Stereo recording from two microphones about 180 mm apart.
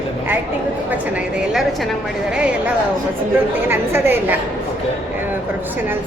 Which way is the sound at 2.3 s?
5° right (ahead or behind).